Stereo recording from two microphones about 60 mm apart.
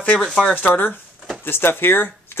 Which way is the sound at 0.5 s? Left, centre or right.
Left.